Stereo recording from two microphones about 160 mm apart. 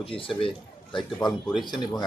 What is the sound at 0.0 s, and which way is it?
A man's voice, 35° left (ahead or behind).